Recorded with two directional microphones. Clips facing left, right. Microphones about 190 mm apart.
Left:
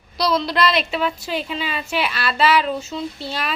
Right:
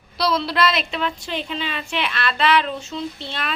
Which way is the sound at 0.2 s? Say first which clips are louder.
Left 1 dB; centre (ahead or behind).